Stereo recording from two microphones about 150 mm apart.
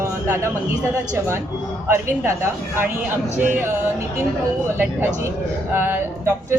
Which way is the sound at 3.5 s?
15° right (ahead or behind).